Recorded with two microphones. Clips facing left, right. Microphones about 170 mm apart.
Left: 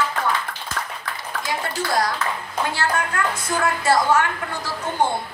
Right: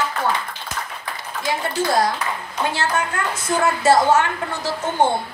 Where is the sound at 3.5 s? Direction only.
25° right (ahead or behind).